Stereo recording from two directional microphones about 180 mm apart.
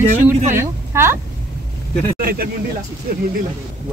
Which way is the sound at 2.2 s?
55° right (ahead or behind).